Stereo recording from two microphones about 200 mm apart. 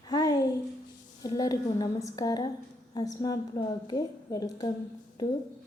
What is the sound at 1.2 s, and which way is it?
A woman's voice, 20° left (ahead or behind).